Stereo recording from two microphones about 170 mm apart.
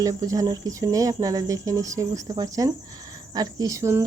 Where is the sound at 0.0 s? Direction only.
20° right (ahead or behind).